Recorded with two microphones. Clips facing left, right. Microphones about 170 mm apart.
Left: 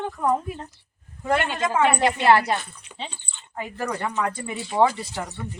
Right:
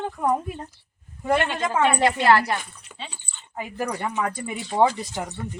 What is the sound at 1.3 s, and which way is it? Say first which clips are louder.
A woman's voice: even; 10° left (ahead or behind).